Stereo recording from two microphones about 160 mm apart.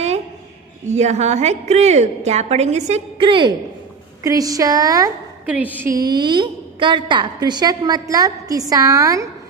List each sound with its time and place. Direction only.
0.8 s a woman's voice: 45° right (ahead or behind); by 5.1 s 20° right (ahead or behind)
5.5 s a woman's voice: 10° right (ahead or behind)
5.9 s a woman's voice: 25° right (ahead or behind)